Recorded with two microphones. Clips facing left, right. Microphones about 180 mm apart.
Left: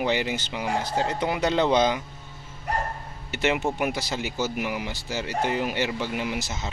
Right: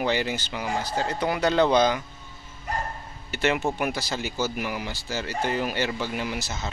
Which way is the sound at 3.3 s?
20° left (ahead or behind).